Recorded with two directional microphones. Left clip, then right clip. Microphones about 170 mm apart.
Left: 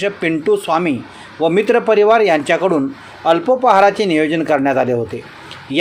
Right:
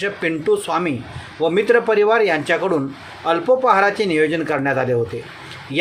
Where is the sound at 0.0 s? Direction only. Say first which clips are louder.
Left 3 dB; 25° left (ahead or behind).